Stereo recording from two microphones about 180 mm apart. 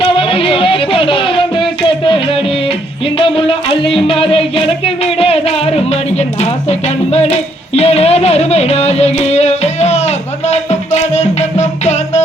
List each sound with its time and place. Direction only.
0.0 s music: 30° left (ahead or behind)